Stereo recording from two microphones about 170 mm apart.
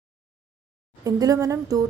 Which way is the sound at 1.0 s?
20° right (ahead or behind).